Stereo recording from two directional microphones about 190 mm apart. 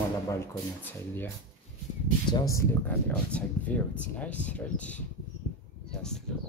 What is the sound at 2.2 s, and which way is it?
Speech, 20° left (ahead or behind).